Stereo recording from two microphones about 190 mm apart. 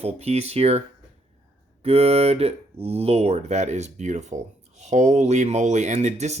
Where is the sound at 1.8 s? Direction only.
35° right (ahead or behind).